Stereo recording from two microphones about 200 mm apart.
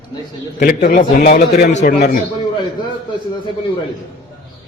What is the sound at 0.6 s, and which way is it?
A man's voice, 45° left (ahead or behind).